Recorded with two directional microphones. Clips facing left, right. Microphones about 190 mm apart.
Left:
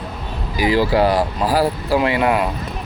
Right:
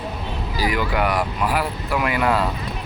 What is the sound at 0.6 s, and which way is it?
Speech, 30° left (ahead or behind).